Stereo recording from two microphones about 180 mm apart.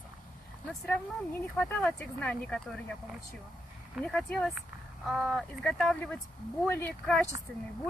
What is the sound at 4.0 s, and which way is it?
Speech, 5° left (ahead or behind).